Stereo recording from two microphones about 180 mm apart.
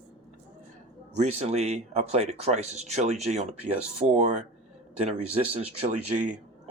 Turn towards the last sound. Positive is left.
turn(degrees=-40)  # may be behind; listen again after turning